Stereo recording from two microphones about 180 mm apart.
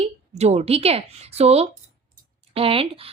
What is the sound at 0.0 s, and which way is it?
Speech, 35° right (ahead or behind).